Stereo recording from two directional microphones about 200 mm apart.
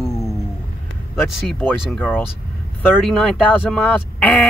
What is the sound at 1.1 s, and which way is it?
Speech, centre (ahead or behind).